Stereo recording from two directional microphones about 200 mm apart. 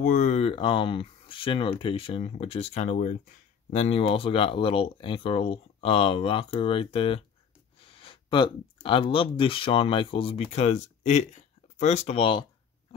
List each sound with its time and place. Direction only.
0.0 s speech: 40° left (ahead or behind)